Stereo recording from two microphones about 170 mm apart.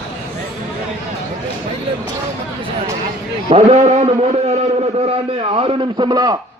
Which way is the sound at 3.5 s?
40° right (ahead or behind).